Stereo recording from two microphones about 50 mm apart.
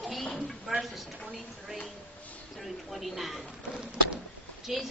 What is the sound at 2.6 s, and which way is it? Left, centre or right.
Speech, centre.